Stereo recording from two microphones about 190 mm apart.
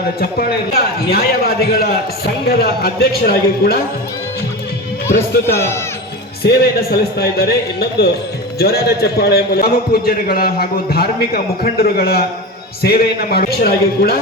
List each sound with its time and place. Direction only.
0.2 s a man's voice: 55° left (ahead or behind)
6.4 s a man's voice: 55° left (ahead or behind)